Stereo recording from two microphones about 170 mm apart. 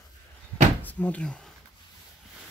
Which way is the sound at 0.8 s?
10° left (ahead or behind).